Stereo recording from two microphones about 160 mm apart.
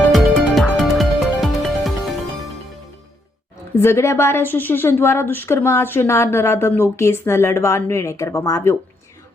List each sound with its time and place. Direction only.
0.1 s music: centre (ahead or behind)
3.8 s a woman's voice: 15° left (ahead or behind)